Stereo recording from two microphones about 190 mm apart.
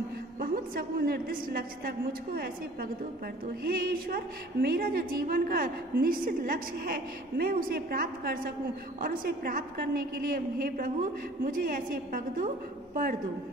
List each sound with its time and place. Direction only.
0.4 s a woman's voice: 50° right (ahead or behind)